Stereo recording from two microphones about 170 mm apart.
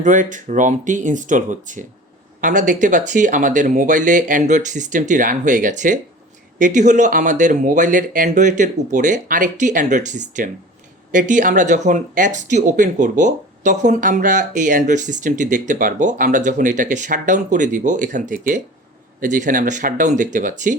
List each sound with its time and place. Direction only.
0.0 s speech: 50° right (ahead or behind)